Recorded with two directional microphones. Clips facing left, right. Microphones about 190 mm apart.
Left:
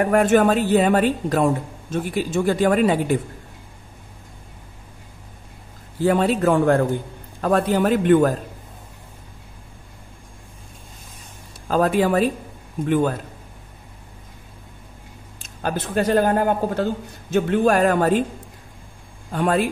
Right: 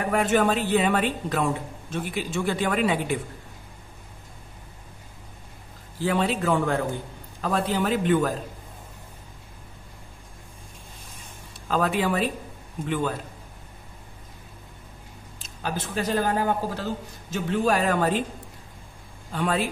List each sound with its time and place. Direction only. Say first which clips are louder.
0.0 s a woman's voice: left 6 dB; 50° left (ahead or behind)
6.0 s a woman's voice: left 6 dB; 45° left (ahead or behind)
11.6 s a woman's voice: left 6 dB; 45° left (ahead or behind)
15.4 s a woman's voice: left 5 dB; 55° left (ahead or behind)
19.3 s a woman's voice: left 6 dB; 50° left (ahead or behind)